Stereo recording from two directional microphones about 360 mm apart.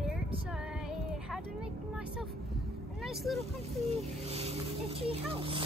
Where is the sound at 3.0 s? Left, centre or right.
Centre.